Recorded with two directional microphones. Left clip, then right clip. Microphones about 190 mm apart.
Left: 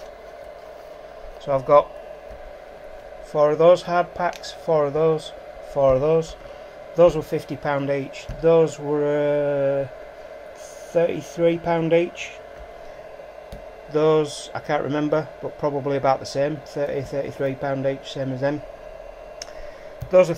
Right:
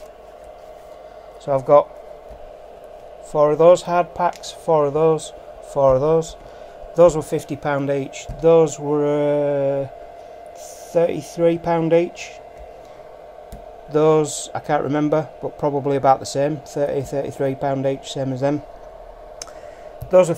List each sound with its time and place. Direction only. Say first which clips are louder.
1.5 s a man's voice: right 2 dB; 15° right (ahead or behind)
3.3 s speech: right 3 dB; 20° right (ahead or behind)
10.9 s speech: right 2 dB; 20° right (ahead or behind)
13.9 s speech: right 3 dB; 25° right (ahead or behind)
20.1 s speech: right 2 dB; 25° right (ahead or behind)